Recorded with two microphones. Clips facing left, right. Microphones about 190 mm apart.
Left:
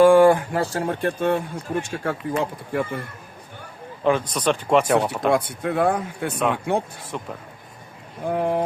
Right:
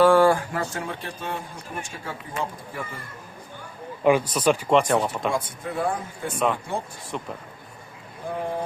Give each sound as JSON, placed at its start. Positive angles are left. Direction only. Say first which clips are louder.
{"t": 0.0, "sound": "a sound", "louder": "left 4 dB", "side_deg": 15}
{"t": 0.5, "sound": "speech", "louder": "left 6 dB", "side_deg": 35}
{"t": 1.0, "sound": "speech", "louder": "left 11 dB", "side_deg": 60}
{"t": 4.0, "sound": "speech", "louder": "right 1 dB", "side_deg": -10}
{"t": 4.7, "sound": "speech", "louder": "left 5 dB", "side_deg": 5}
{"t": 5.3, "sound": "speech", "louder": "left 7 dB", "side_deg": 65}
{"t": 6.3, "sound": "speech", "louder": "left 3 dB", "side_deg": 0}
{"t": 8.3, "sound": "speech", "louder": "left 7 dB", "side_deg": 60}